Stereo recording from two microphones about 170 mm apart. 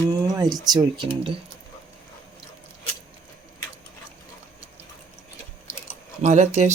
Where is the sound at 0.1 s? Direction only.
20° right (ahead or behind).